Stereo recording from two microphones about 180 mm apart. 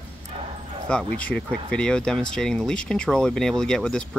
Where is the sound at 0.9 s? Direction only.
5° left (ahead or behind).